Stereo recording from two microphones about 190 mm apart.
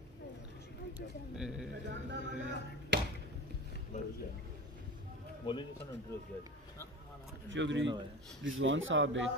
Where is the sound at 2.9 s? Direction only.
65° right (ahead or behind).